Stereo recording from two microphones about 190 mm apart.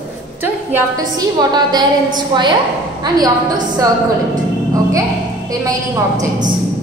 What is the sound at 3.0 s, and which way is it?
Speech, 20° right (ahead or behind).